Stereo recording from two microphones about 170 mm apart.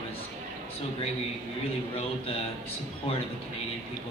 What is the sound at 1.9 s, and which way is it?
Speech, 35° left (ahead or behind).